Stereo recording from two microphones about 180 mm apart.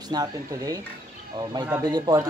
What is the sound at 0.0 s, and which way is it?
Speech, 20° right (ahead or behind).